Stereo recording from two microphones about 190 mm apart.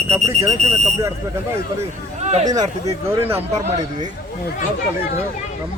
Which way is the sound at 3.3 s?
35° right (ahead or behind).